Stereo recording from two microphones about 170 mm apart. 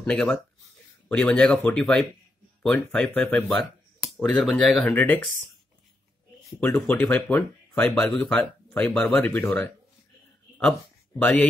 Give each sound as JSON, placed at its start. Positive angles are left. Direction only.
{"t": 0.0, "sound": "speech", "side_deg": 5}
{"t": 6.6, "sound": "speech", "side_deg": 5}
{"t": 11.1, "sound": "speech", "side_deg": 10}